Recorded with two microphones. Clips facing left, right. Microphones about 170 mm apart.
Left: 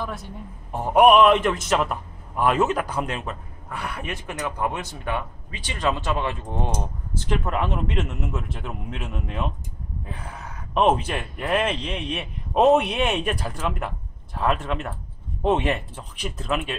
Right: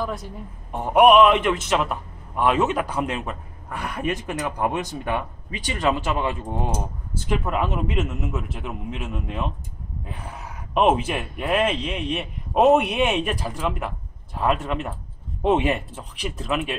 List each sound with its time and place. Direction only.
0.0 s a man's voice: centre (ahead or behind)
3.2 s a man's voice: 15° right (ahead or behind); by 9.5 s centre (ahead or behind)
10.7 s a man's voice: 5° right (ahead or behind)